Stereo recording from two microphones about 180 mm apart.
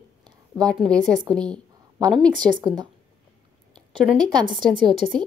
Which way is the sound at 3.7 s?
Centre (ahead or behind).